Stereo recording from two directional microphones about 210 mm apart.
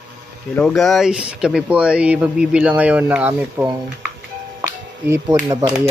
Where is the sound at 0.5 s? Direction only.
Centre (ahead or behind).